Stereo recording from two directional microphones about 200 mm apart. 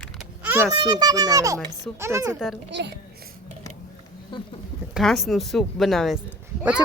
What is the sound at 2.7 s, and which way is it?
Speech, 65° right (ahead or behind).